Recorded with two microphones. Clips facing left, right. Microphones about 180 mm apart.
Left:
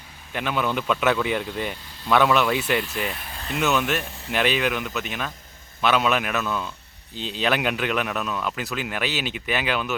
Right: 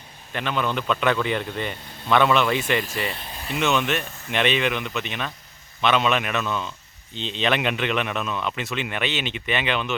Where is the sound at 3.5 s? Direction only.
Centre (ahead or behind).